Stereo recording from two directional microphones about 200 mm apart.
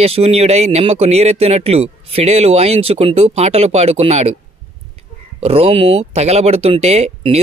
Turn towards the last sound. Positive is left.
turn(degrees=-30)  # may be behind; listen again after turning